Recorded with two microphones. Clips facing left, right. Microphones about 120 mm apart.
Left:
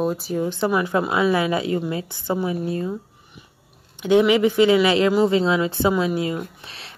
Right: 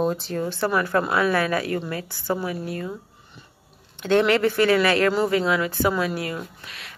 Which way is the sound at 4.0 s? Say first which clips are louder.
Left 3 dB; 10° left (ahead or behind).